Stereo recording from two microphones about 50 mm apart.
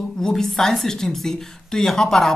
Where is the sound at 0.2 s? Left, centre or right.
Centre.